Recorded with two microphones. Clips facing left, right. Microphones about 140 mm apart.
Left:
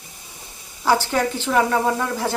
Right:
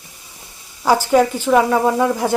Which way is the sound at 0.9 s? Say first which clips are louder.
Right 5 dB; 10° right (ahead or behind).